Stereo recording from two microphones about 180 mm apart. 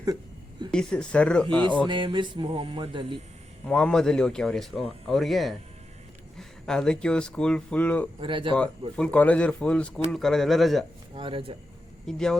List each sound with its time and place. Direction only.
0.7 s a man's voice: 5° left (ahead or behind)
1.9 s music: 25° right (ahead or behind)
3.7 s a man's voice: 5° left (ahead or behind)
6.7 s a man's voice: 5° left (ahead or behind)
8.2 s music: 25° right (ahead or behind)
9.0 s a man's voice: 5° left (ahead or behind)
11.1 s music: 30° right (ahead or behind)
12.0 s a man's voice: 5° left (ahead or behind)